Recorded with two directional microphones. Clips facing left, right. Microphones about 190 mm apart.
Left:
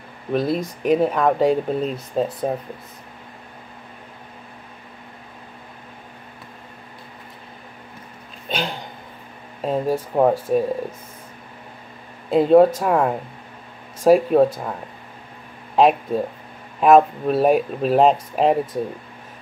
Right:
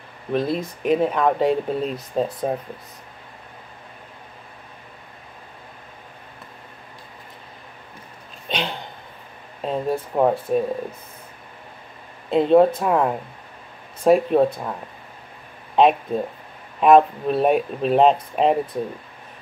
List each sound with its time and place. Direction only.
0.3 s speech: centre (ahead or behind)
8.5 s speech: centre (ahead or behind)
12.3 s speech: 5° left (ahead or behind)